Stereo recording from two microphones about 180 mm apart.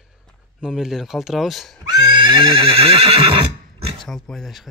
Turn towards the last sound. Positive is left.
turn(degrees=0)  # may be behind; listen again after turning